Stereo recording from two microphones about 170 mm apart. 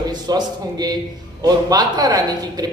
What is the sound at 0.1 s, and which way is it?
Speech, 25° right (ahead or behind).